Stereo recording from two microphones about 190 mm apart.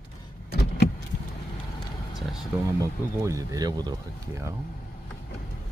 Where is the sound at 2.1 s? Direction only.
Centre (ahead or behind).